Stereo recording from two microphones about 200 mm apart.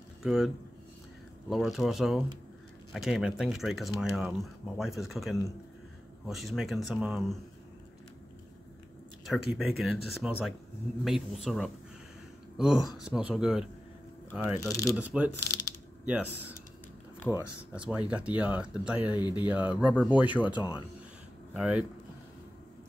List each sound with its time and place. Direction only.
0.2 s speech: centre (ahead or behind)
1.5 s speech: centre (ahead or behind)
9.2 s speech: 5° right (ahead or behind)
14.7 s speech: 15° left (ahead or behind)
15.0 s speech: 5° right (ahead or behind)
15.4 s mechanisms: 15° left (ahead or behind)
16.1 s speech: 10° right (ahead or behind)
19.1 s speech: 20° left (ahead or behind)
19.4 s speech: 10° right (ahead or behind)